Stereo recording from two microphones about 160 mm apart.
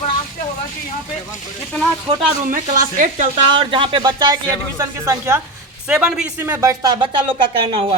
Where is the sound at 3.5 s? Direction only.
30° right (ahead or behind).